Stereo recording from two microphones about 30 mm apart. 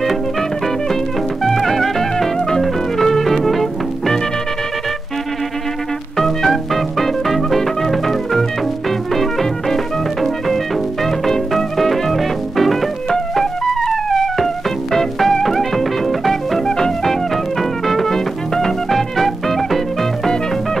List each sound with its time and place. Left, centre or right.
1.4 s music: centre
6.1 s music: centre
11.1 s music: centre
16.6 s music: left
17.0 s music: centre